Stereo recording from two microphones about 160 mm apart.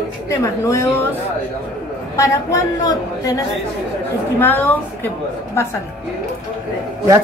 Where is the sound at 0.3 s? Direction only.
20° left (ahead or behind).